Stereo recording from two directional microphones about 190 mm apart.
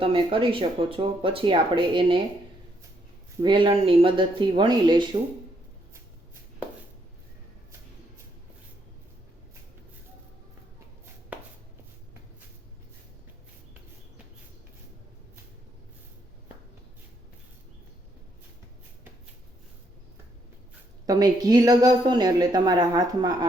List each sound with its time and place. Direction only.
0.0 s speech: 30° right (ahead or behind)
3.4 s speech: 25° right (ahead or behind)
21.1 s speech: 20° right (ahead or behind)